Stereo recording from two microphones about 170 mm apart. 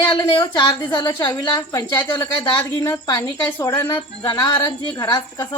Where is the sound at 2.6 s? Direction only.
15° left (ahead or behind).